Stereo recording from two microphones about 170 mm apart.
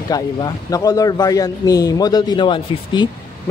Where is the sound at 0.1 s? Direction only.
20° left (ahead or behind).